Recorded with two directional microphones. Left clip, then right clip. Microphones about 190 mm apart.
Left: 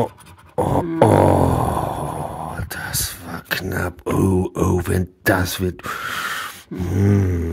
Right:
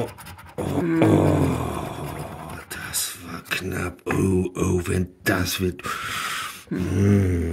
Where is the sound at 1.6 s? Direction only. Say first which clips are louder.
Left 8 dB; 40° left (ahead or behind).